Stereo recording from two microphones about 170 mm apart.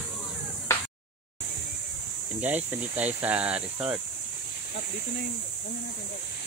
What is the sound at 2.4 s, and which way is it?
Speech, 10° right (ahead or behind).